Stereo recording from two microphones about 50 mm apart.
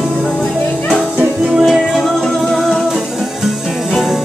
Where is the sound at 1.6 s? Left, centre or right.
Centre.